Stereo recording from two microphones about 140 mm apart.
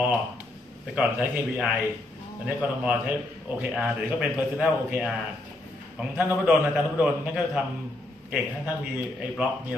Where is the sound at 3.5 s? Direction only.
5° right (ahead or behind).